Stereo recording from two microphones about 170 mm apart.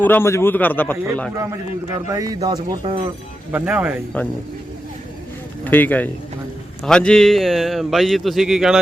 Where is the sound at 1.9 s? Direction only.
20° right (ahead or behind).